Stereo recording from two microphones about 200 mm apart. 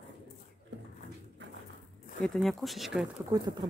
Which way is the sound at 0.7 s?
65° right (ahead or behind).